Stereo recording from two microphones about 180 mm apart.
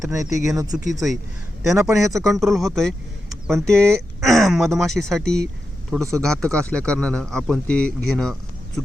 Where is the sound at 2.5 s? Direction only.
Centre (ahead or behind).